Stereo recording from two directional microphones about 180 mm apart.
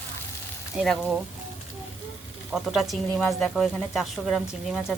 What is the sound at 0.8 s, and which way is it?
Speech, 5° right (ahead or behind).